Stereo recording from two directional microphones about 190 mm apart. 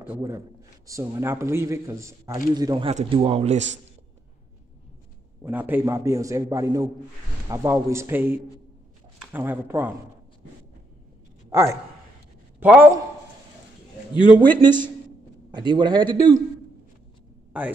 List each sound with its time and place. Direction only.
0.0 s a man's voice: 10° right (ahead or behind)
2.9 s a man's voice: 35° right (ahead or behind)
5.4 s a man's voice: 10° right (ahead or behind)
12.5 s a man's voice: 10° right (ahead or behind)
14.6 s a man's voice: 25° right (ahead or behind)
17.5 s speech: 10° right (ahead or behind)